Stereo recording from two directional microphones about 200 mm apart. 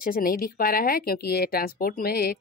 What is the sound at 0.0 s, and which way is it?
Speech, 45° left (ahead or behind).